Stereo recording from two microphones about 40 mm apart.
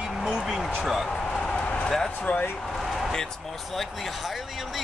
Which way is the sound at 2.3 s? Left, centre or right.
Left.